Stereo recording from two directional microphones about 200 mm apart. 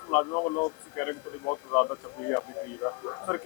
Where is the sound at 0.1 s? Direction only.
20° left (ahead or behind).